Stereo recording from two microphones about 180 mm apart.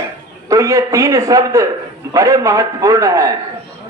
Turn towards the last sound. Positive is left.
turn(degrees=-20)  # may be behind; listen again after turning